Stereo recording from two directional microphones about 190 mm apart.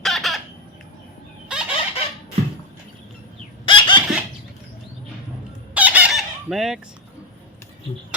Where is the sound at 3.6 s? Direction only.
25° left (ahead or behind).